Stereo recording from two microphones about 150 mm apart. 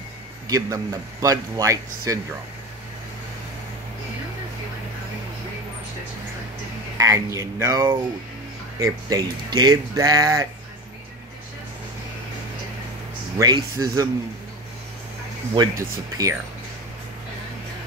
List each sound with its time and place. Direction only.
0.5 s speech: 20° right (ahead or behind)
7.0 s speech: 20° right (ahead or behind)
13.4 s speech: 25° right (ahead or behind)
15.5 s speech: 25° right (ahead or behind)